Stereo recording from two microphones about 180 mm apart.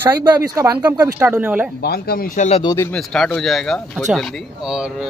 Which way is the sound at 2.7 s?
5° left (ahead or behind).